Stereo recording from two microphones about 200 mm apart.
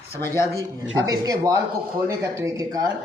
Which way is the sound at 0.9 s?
20° right (ahead or behind).